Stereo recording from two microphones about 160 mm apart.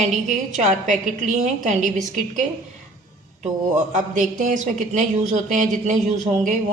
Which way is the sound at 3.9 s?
55° right (ahead or behind).